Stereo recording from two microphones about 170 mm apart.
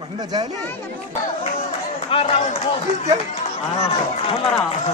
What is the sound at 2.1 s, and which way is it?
Speech, 35° left (ahead or behind).